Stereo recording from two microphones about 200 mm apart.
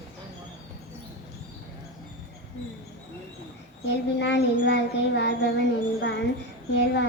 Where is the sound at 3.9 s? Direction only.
60° left (ahead or behind).